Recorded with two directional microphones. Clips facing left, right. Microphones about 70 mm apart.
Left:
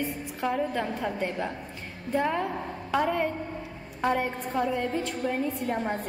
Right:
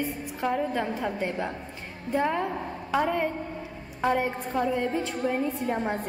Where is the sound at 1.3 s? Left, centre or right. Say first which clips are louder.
Right 1 dB; right.